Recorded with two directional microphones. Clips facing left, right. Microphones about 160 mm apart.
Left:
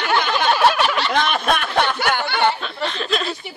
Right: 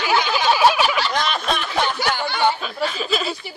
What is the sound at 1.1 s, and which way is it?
Speech, 55° left (ahead or behind).